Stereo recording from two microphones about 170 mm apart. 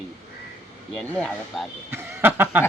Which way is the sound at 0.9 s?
5° left (ahead or behind).